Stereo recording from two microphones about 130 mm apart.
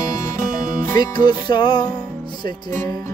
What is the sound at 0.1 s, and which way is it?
Music, 25° left (ahead or behind).